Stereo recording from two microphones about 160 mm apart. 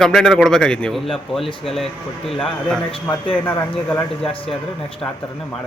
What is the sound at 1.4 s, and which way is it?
Speech, 30° left (ahead or behind).